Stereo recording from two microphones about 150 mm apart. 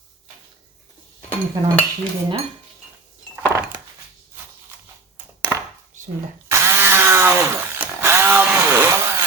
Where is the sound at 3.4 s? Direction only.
20° right (ahead or behind).